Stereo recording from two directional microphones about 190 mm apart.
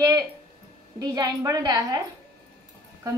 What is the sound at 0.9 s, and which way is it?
A woman's voice, 20° right (ahead or behind).